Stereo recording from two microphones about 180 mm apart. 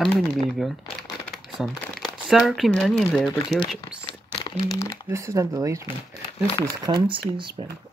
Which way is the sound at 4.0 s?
25° left (ahead or behind).